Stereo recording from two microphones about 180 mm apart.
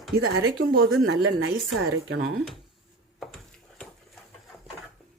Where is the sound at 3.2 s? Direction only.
Centre (ahead or behind).